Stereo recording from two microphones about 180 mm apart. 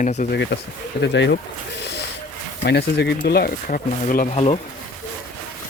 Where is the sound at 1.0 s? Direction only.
75° left (ahead or behind).